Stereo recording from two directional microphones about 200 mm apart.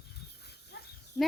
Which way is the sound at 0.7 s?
55° left (ahead or behind).